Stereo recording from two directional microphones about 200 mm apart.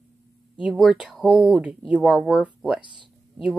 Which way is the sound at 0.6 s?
Centre (ahead or behind).